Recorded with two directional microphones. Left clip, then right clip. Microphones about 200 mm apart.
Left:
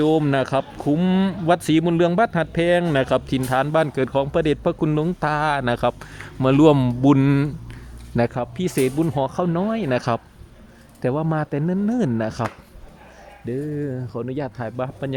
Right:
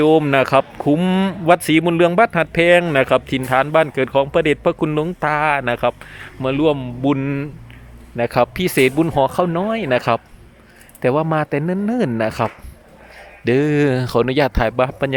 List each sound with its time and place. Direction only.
0.0 s speech: centre (ahead or behind)
6.4 s speech: 15° left (ahead or behind)
8.3 s speech: 5° right (ahead or behind)
13.6 s speech: 35° right (ahead or behind)
14.1 s speech: 25° right (ahead or behind)